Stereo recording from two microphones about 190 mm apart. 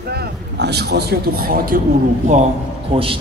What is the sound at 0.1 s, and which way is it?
A man's voice, 60° right (ahead or behind).